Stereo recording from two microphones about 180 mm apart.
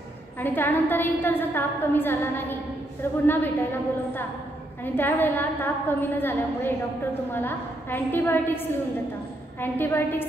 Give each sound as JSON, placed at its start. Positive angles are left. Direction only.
{"t": 0.4, "sound": "a woman's voice", "side_deg": 10}